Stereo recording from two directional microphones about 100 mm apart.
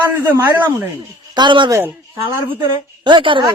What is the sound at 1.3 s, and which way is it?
Speech, 50° right (ahead or behind).